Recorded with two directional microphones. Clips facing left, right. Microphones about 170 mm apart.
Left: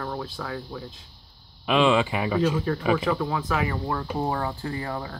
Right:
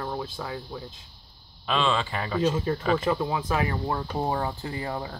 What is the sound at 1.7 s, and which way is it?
Speech, 10° left (ahead or behind).